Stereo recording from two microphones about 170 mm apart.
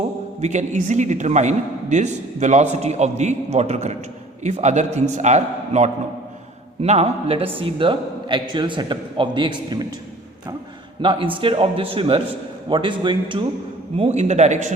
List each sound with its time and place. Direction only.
0.4 s a man's voice: 45° right (ahead or behind); by 9.8 s 25° right (ahead or behind)
11.0 s a man's voice: 30° right (ahead or behind)